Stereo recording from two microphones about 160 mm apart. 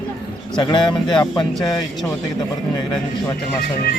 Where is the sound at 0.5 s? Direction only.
30° left (ahead or behind).